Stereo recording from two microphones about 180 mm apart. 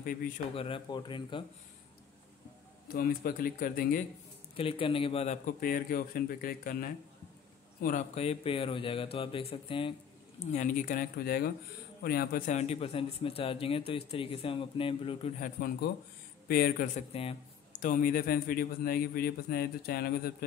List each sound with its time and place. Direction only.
0.0 s speech: 50° left (ahead or behind)
0.6 s speech: 30° left (ahead or behind)
2.9 s a man's voice: 55° left (ahead or behind)
4.6 s a man's voice: 30° left (ahead or behind)
10.4 s a man's voice: 40° left (ahead or behind)
15.4 s a man's voice: 55° left (ahead or behind)
17.1 s a sound: 35° left (ahead or behind)
17.8 s a man's voice: 50° left (ahead or behind)